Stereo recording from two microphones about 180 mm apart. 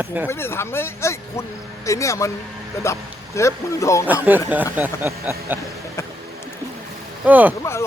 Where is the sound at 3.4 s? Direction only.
15° left (ahead or behind).